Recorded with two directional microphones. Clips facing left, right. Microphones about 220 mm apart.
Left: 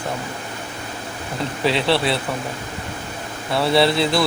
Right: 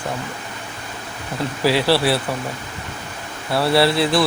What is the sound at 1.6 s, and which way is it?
Speech, 5° right (ahead or behind).